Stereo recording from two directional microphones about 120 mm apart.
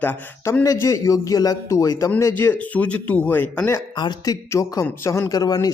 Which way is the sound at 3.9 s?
35° left (ahead or behind).